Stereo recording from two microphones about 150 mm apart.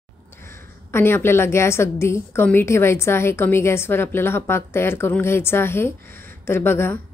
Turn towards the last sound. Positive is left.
turn(degrees=15)  # may be behind; listen again after turning